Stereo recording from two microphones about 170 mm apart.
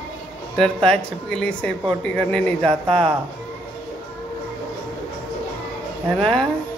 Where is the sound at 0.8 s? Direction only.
5° left (ahead or behind).